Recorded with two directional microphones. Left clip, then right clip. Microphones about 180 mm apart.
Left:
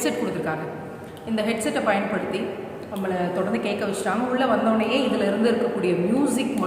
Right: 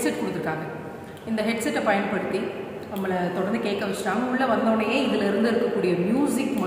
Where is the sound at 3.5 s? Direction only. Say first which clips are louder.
Left 1 dB; 5° left (ahead or behind).